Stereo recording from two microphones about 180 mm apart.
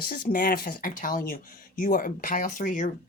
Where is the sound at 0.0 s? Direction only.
55° left (ahead or behind).